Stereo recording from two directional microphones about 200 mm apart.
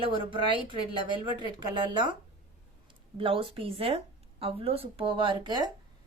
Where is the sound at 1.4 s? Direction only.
25° right (ahead or behind).